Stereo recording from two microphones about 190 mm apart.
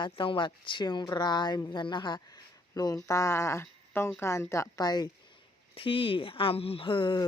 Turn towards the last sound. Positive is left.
turn(degrees=25)  # may be behind; listen again after turning